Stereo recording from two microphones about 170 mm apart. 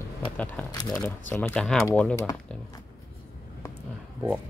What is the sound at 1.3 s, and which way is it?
Speech, 10° left (ahead or behind).